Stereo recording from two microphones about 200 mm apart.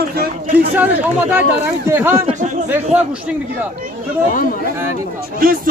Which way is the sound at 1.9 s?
10° right (ahead or behind).